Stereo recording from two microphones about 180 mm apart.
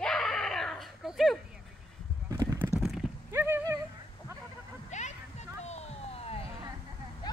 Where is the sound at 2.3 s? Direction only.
15° right (ahead or behind).